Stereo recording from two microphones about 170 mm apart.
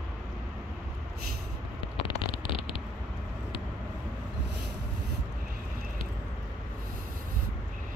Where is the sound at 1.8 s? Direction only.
30° left (ahead or behind).